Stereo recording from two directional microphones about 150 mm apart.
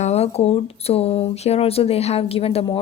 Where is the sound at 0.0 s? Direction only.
45° left (ahead or behind).